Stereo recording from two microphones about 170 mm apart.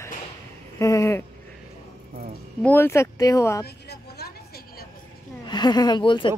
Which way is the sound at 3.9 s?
70° left (ahead or behind).